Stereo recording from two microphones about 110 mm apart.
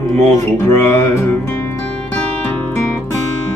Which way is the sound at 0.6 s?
25° left (ahead or behind).